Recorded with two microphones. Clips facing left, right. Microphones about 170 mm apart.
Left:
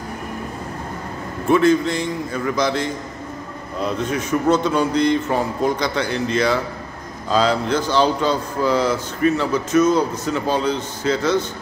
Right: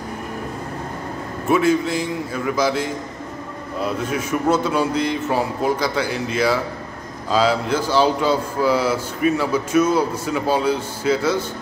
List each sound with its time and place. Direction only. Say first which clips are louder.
1.5 s a man's voice: left 2 dB; 5° right (ahead or behind)